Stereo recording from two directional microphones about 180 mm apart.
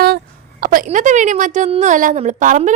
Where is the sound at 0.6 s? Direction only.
50° right (ahead or behind).